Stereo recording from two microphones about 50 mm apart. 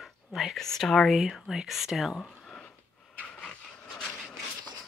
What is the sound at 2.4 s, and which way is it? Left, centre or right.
Wheeze, centre.